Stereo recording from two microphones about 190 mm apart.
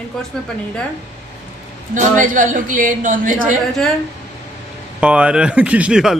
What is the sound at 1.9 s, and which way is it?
A man's voice, 45° right (ahead or behind).